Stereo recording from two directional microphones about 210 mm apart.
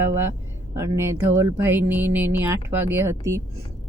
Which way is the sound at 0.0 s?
10° right (ahead or behind).